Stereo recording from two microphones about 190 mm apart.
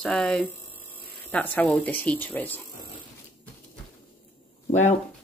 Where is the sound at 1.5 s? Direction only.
5° left (ahead or behind).